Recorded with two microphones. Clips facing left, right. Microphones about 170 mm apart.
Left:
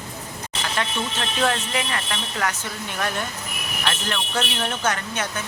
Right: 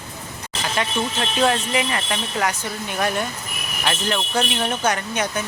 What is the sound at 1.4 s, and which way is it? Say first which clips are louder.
Speech: right 4 dB; 15° right (ahead or behind).